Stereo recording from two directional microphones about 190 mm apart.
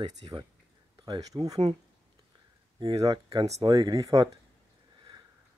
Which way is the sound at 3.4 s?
35° right (ahead or behind).